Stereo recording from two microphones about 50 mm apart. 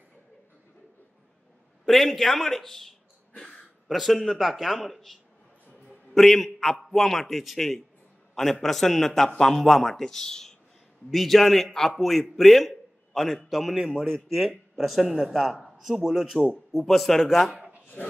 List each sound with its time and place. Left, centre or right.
1.9 s a man's voice: centre
14.1 s a man's voice: centre
18.0 s a sound: left